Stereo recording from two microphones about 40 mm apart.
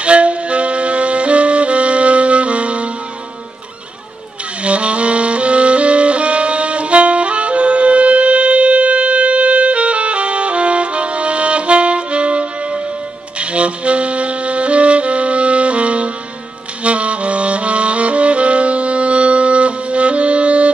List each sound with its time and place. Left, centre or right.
0.0 s music: right
4.6 s music: right